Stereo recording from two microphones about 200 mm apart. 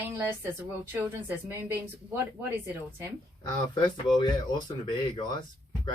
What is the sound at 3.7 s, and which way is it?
Speech, 20° left (ahead or behind).